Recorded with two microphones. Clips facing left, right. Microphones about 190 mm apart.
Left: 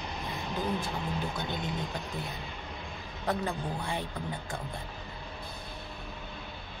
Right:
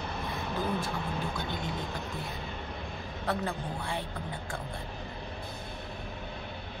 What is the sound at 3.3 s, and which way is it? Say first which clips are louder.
Speech: left 1 dB; 15° left (ahead or behind).